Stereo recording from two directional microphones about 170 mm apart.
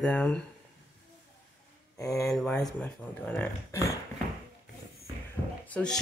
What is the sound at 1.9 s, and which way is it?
Speech, 20° left (ahead or behind).